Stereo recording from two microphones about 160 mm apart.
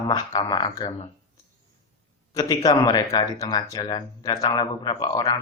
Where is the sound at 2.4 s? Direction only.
25° left (ahead or behind).